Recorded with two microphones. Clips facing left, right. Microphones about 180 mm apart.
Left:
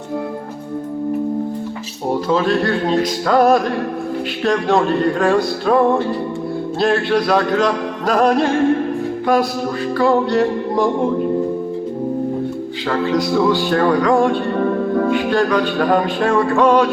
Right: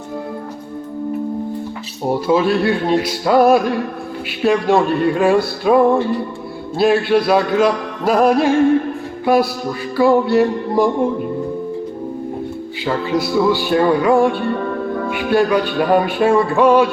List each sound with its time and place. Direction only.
2.2 s music: 10° right (ahead or behind)
13.1 s music: 5° right (ahead or behind)